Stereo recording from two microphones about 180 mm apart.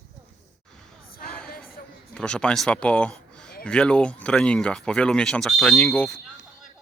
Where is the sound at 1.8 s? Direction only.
55° left (ahead or behind).